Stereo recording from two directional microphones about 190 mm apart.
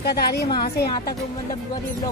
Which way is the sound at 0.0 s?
55° left (ahead or behind).